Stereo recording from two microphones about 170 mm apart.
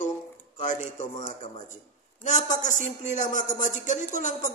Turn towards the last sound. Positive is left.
turn(degrees=45)  # may be behind; listen again after turning